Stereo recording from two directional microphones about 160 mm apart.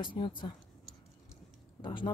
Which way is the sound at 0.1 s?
30° left (ahead or behind).